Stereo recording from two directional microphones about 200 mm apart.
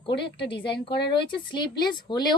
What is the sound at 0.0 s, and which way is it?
A woman's voice, 25° left (ahead or behind).